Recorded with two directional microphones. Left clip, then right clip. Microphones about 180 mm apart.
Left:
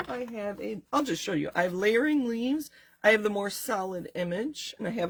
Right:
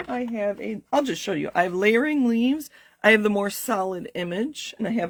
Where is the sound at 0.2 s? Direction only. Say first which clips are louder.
Right 7 dB; 40° right (ahead or behind).